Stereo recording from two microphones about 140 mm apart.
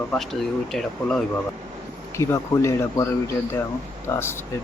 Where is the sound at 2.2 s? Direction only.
20° left (ahead or behind).